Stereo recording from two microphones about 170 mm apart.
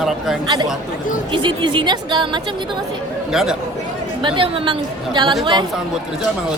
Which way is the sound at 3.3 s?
5° right (ahead or behind).